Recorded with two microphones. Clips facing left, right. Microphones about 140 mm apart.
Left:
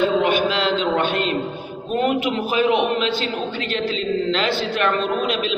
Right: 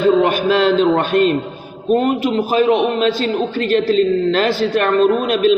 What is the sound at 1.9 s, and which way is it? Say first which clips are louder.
A man's voice: right 5 dB; 40° right (ahead or behind).